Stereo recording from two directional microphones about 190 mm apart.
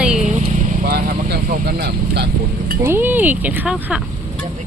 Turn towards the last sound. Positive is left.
turn(degrees=-5)  # may be behind; listen again after turning